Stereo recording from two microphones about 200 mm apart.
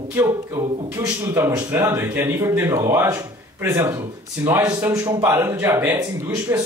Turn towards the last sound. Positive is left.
turn(degrees=-15)  # may be behind; listen again after turning